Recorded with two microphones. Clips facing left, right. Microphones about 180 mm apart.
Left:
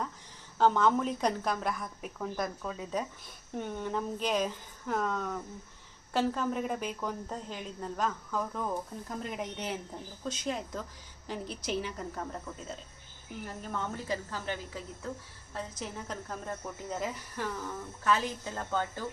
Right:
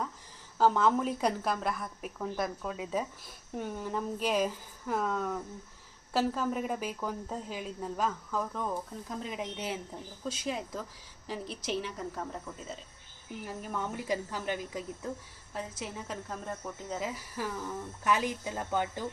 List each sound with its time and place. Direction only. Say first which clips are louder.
0.6 s a woman's voice: even; 5° right (ahead or behind)
15.5 s a woman's voice: even; 5° right (ahead or behind)
18.0 s speech: even; 15° right (ahead or behind)